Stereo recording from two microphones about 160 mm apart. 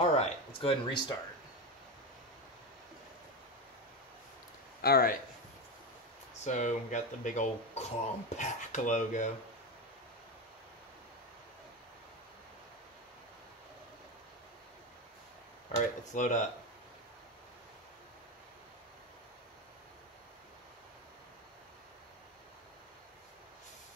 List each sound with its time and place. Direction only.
0.0 s speech: 35° left (ahead or behind)
4.8 s speech: 75° left (ahead or behind)
6.4 s speech: 50° left (ahead or behind)
16.2 s speech: 50° left (ahead or behind)